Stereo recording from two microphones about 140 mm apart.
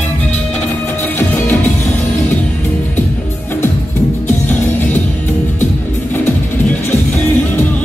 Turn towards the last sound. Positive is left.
turn(degrees=15)  # may be behind; listen again after turning